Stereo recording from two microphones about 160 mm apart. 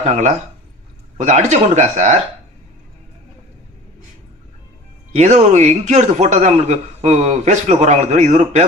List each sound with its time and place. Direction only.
0.0 s a man's voice: 45° right (ahead or behind)
5.1 s a man's voice: 45° right (ahead or behind)